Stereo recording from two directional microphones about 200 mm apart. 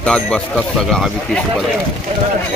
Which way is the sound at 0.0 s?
5° left (ahead or behind).